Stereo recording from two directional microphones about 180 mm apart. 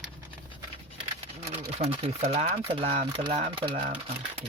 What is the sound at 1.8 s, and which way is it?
Speech, 35° right (ahead or behind).